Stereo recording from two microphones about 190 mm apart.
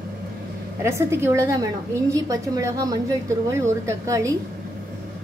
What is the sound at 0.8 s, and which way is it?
A woman's voice, 15° right (ahead or behind).